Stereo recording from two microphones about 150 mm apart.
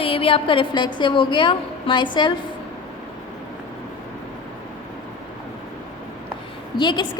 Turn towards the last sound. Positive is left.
turn(degrees=30)  # may be behind; listen again after turning